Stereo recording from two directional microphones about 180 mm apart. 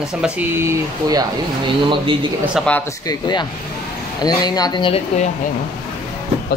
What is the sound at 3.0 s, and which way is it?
Speech, 25° left (ahead or behind).